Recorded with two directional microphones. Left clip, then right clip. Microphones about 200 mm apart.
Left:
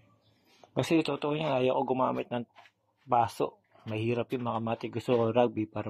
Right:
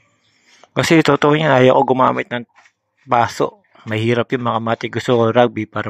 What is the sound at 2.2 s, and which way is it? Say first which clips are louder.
Speech: right 12 dB; 50° right (ahead or behind).